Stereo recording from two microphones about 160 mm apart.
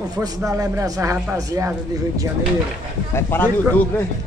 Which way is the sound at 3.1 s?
15° left (ahead or behind).